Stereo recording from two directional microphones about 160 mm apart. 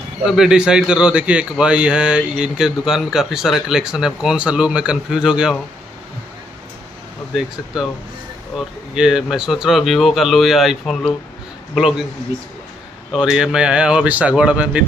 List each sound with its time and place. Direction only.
0.2 s a man's voice: 5° right (ahead or behind)
7.3 s a man's voice: centre (ahead or behind)
13.1 s a man's voice: 5° right (ahead or behind)